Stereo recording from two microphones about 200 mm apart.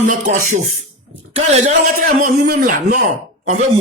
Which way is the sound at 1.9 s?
45° right (ahead or behind).